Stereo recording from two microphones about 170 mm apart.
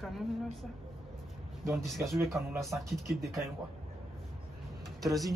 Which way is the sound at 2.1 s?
15° right (ahead or behind).